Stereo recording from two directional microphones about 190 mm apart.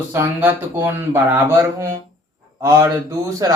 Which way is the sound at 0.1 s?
10° right (ahead or behind).